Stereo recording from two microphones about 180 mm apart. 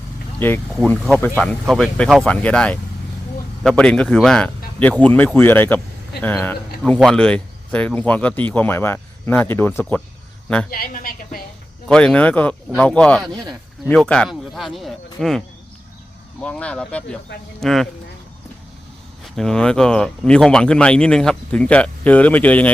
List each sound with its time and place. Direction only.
0.3 s speech: 10° left (ahead or behind)
10.7 s a woman's voice: 55° left (ahead or behind)
11.9 s speech: 5° left (ahead or behind)
19.4 s speech: 5° left (ahead or behind)